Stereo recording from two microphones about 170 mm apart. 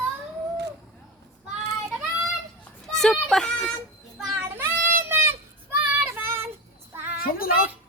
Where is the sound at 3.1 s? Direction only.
Centre (ahead or behind).